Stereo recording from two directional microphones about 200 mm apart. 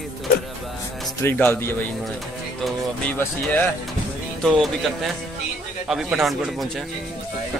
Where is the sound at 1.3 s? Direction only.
10° left (ahead or behind).